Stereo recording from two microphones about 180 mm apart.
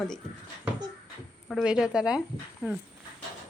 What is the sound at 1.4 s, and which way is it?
Speech, 5° right (ahead or behind).